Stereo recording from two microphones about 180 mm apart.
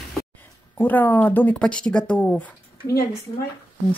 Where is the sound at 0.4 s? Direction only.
10° left (ahead or behind).